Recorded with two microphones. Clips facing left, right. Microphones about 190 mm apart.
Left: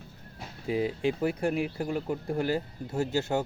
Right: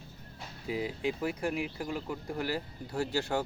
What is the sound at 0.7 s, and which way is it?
Speech, 30° left (ahead or behind).